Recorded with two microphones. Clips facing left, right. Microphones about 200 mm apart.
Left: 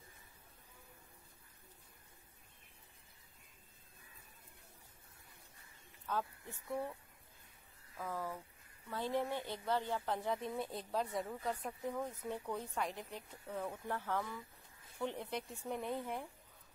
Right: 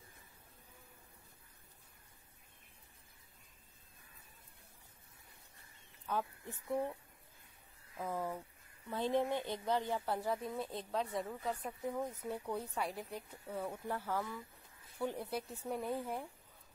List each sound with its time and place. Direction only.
6.0 s speech: 15° right (ahead or behind)
8.0 s speech: 20° right (ahead or behind)